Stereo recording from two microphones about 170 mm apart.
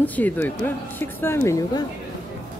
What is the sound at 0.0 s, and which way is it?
Speech, 10° left (ahead or behind).